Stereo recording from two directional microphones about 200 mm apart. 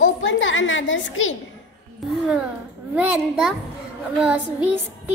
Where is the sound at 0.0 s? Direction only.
70° left (ahead or behind).